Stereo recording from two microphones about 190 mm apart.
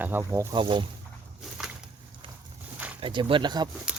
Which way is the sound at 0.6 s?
25° right (ahead or behind).